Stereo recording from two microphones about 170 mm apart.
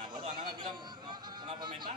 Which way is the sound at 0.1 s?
25° right (ahead or behind).